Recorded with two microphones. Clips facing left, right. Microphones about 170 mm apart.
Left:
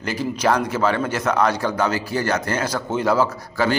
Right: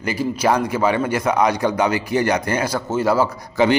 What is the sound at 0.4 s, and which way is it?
A man's voice, 10° right (ahead or behind).